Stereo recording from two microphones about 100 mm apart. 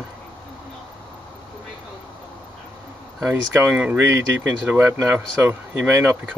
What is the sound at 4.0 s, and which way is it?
Speech, 25° right (ahead or behind).